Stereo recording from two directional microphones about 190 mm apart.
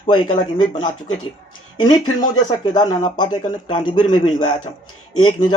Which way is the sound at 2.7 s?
25° left (ahead or behind).